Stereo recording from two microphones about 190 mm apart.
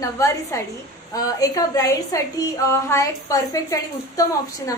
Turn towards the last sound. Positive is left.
turn(degrees=20)  # may be behind; listen again after turning